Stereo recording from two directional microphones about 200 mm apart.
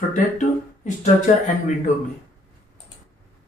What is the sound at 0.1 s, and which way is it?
Speech, 40° left (ahead or behind).